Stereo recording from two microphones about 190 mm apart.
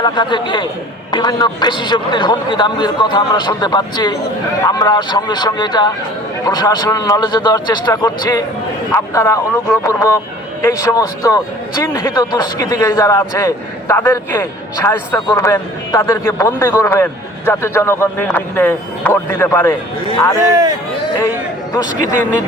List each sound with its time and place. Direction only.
0.0 s a man's voice: 25° left (ahead or behind)